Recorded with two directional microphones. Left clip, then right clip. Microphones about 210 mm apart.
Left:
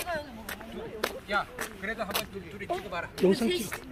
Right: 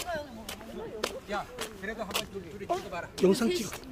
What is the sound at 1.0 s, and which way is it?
Speech, centre (ahead or behind).